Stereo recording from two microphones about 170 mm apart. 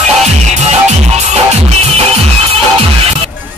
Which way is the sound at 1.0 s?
40° right (ahead or behind).